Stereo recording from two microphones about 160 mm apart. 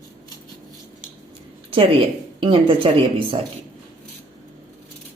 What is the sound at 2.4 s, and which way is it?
Speech, 35° right (ahead or behind).